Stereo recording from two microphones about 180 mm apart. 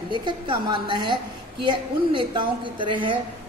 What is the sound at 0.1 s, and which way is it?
A woman's voice, 25° right (ahead or behind).